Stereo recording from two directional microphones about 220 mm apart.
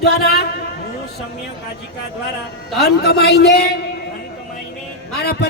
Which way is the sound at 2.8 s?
45° left (ahead or behind).